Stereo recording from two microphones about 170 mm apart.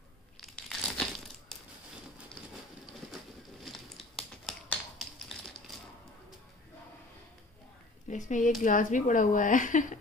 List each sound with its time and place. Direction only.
0.4 s crushing: 5° left (ahead or behind)
3.6 s a sound: centre (ahead or behind)
8.1 s speech: 45° left (ahead or behind)